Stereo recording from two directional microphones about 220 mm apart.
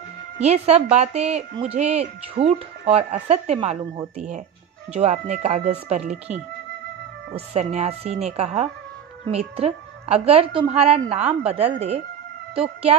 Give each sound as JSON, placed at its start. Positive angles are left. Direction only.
{"t": 0.4, "sound": "speech", "side_deg": -30}
{"t": 7.3, "sound": "speech", "side_deg": -30}